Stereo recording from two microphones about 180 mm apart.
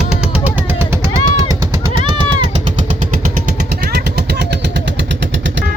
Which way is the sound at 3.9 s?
65° right (ahead or behind).